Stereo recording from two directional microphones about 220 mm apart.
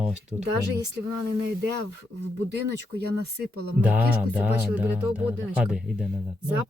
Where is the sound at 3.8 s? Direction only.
5° right (ahead or behind).